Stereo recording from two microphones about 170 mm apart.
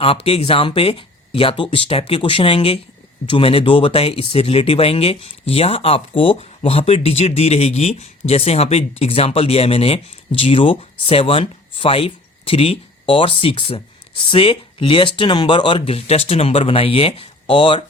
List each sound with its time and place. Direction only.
0.0 s speech: 35° left (ahead or behind)